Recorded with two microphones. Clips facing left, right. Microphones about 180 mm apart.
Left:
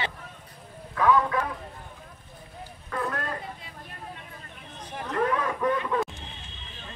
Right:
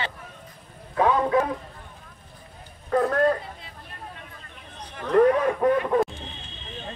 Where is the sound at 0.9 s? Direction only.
30° right (ahead or behind).